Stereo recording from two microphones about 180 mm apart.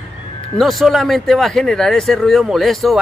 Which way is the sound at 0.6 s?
Centre (ahead or behind).